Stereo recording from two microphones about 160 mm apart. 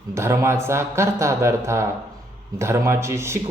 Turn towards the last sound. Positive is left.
turn(degrees=-15)  # may be behind; listen again after turning